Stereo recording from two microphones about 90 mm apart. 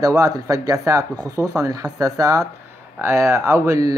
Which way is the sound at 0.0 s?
40° right (ahead or behind).